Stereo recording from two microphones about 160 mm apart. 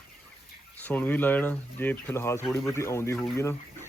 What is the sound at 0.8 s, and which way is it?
Speech, 10° left (ahead or behind).